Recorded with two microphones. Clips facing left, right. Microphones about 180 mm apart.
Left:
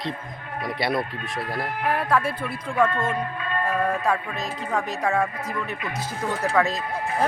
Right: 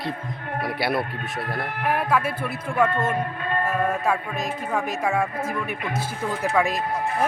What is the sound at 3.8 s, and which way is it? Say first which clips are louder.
Music: even; 5° right (ahead or behind).